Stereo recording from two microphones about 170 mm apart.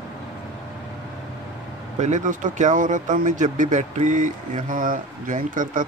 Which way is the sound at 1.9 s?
45° right (ahead or behind).